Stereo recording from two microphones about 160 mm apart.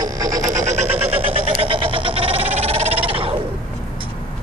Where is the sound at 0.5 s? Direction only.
45° right (ahead or behind).